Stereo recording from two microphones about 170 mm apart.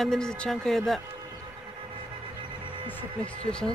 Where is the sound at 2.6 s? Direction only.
30° right (ahead or behind).